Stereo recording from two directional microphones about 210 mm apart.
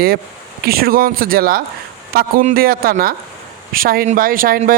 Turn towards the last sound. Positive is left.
turn(degrees=-40)  # may be behind; listen again after turning